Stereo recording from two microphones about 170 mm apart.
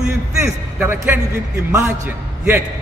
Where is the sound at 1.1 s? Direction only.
10° right (ahead or behind).